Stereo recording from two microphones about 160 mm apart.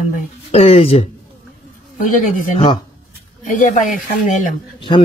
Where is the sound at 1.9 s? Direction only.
55° left (ahead or behind).